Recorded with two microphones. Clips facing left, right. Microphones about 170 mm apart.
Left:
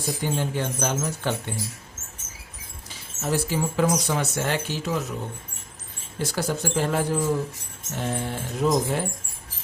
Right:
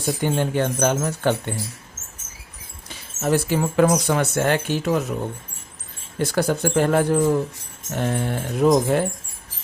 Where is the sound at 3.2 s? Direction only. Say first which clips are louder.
Right 5 dB; 60° right (ahead or behind).